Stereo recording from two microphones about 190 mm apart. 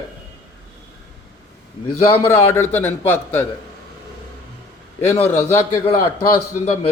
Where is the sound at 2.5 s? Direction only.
10° left (ahead or behind).